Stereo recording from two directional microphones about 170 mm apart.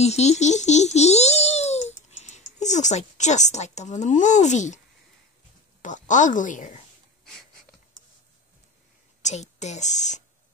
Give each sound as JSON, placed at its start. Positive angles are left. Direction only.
{"t": 0.0, "sound": "speech", "side_deg": 40}
{"t": 5.8, "sound": "a woman's voice", "side_deg": 45}
{"t": 9.2, "sound": "a woman's voice", "side_deg": 40}